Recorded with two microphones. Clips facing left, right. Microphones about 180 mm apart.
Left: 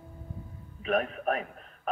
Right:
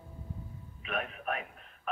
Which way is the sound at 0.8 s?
40° left (ahead or behind).